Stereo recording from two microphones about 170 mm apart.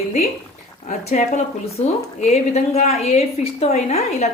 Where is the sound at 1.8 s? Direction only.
40° left (ahead or behind).